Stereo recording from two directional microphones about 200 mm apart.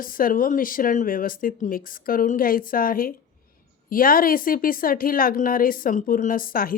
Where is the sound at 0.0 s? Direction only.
45° left (ahead or behind).